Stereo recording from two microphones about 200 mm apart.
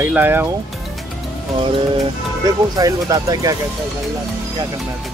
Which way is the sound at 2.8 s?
15° right (ahead or behind).